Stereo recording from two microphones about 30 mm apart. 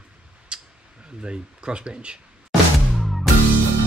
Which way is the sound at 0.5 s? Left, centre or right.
Right.